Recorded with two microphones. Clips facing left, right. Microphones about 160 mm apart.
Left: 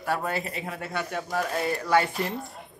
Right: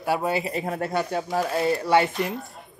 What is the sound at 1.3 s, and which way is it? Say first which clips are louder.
Speech: right 4 dB; 30° right (ahead or behind).